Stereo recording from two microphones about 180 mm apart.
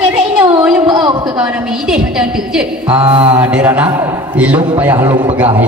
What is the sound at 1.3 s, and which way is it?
A woman's voice, 5° right (ahead or behind).